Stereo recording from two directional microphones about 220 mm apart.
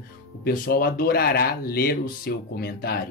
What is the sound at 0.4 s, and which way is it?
Speech, 45° left (ahead or behind).